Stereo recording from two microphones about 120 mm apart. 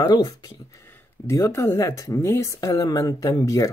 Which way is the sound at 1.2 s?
25° left (ahead or behind).